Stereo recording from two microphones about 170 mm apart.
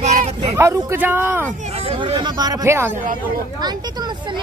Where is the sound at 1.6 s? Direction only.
35° right (ahead or behind); by 3.0 s 15° right (ahead or behind).